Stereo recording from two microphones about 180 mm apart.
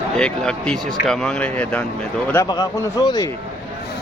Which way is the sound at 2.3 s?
20° left (ahead or behind).